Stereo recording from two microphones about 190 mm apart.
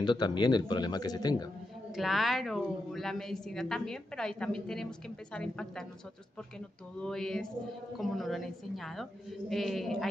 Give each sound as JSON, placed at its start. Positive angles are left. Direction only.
{"t": 0.0, "sound": "speech", "side_deg": 25}
{"t": 2.0, "sound": "a woman's voice", "side_deg": 0}
{"t": 7.0, "sound": "a woman's voice", "side_deg": 5}